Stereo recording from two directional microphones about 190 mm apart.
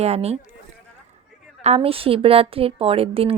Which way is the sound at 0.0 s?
35° right (ahead or behind).